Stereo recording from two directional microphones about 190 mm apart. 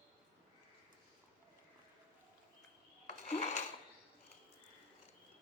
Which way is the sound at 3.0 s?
40° left (ahead or behind).